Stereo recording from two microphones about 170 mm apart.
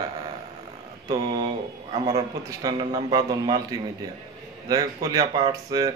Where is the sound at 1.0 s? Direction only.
25° right (ahead or behind).